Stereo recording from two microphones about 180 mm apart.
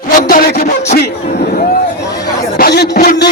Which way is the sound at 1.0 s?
55° left (ahead or behind).